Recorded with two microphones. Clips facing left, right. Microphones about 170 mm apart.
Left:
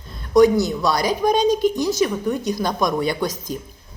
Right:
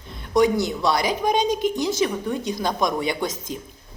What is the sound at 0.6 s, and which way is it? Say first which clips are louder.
A woman's voice: left 2 dB; 25° right (ahead or behind).